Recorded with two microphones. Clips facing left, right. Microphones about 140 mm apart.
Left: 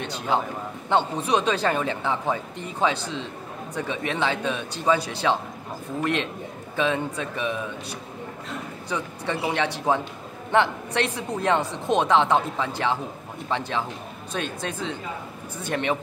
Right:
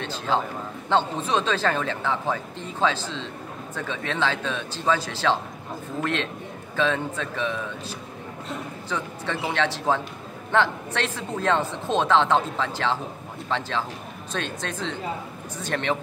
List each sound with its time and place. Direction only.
0.0 s a man's voice: 15° left (ahead or behind)
7.2 s speech: 15° left (ahead or behind)
8.8 s speech: 15° left (ahead or behind)